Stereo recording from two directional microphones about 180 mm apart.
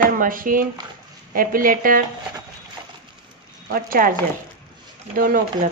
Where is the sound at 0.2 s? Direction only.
50° right (ahead or behind).